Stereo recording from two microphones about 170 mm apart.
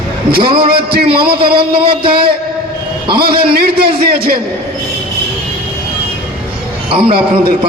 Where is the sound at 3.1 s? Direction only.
65° right (ahead or behind).